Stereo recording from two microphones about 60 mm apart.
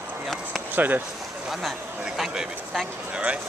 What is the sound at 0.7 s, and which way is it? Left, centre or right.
Speech, right.